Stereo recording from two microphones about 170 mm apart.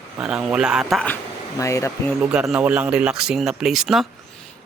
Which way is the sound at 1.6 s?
20° left (ahead or behind).